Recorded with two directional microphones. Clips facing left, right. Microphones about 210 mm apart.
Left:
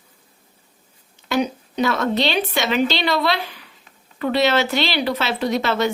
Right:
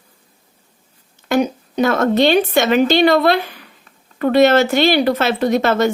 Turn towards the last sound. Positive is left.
turn(degrees=-50)  # may be behind; listen again after turning